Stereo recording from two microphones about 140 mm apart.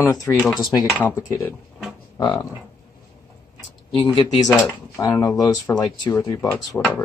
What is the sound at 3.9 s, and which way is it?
Speech, 35° left (ahead or behind).